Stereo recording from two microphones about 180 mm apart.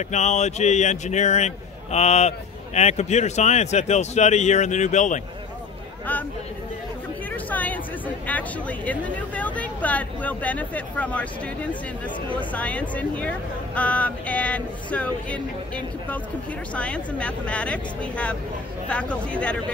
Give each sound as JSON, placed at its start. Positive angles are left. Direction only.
{"t": 0.1, "sound": "a man's voice", "side_deg": 40}
{"t": 7.4, "sound": "chatter", "side_deg": 10}
{"t": 8.3, "sound": "speech", "side_deg": 10}
{"t": 12.3, "sound": "speech", "side_deg": 10}